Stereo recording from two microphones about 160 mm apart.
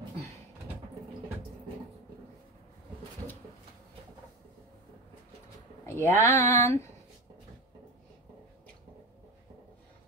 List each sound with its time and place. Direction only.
5.9 s speech: 15° left (ahead or behind)